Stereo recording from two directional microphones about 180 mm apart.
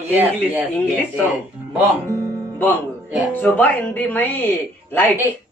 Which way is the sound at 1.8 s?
20° right (ahead or behind).